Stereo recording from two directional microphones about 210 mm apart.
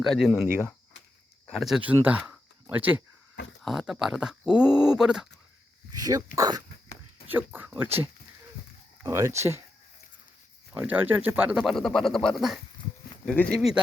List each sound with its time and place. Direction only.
0.0 s speech: centre (ahead or behind)
1.5 s speech: centre (ahead or behind)
6.0 s speech: 15° right (ahead or behind)
9.0 s speech: 15° right (ahead or behind)
10.7 s speech: 5° right (ahead or behind)